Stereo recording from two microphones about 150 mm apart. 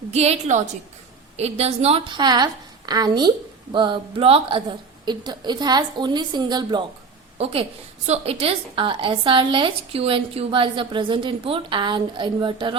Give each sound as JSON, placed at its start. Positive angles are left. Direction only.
{"t": 0.1, "sound": "a woman's voice", "side_deg": -45}
{"t": 7.3, "sound": "a woman's voice", "side_deg": -40}